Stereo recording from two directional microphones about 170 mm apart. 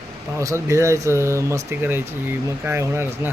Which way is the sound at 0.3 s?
15° right (ahead or behind).